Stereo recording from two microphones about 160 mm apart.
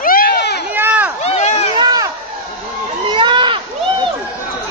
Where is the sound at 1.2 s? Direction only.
45° left (ahead or behind).